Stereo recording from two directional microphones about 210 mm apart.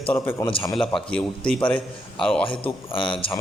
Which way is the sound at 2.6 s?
25° left (ahead or behind).